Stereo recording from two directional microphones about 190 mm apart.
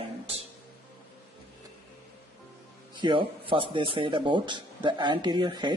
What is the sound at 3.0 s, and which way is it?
Speech, 25° right (ahead or behind).